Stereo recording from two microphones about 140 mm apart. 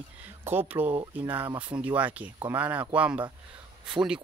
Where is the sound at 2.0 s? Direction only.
10° right (ahead or behind).